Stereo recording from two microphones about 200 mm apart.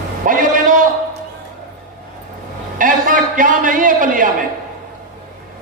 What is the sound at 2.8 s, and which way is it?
A man's voice, 40° right (ahead or behind).